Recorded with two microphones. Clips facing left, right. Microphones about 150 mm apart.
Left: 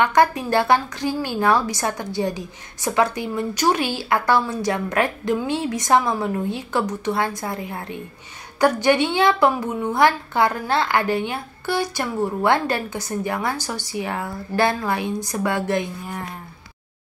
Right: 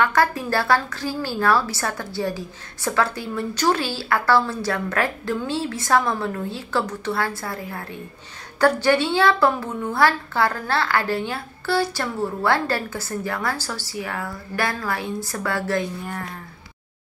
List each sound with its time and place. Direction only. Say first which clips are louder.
0.0 s a woman's voice: left 3 dB; 20° left (ahead or behind)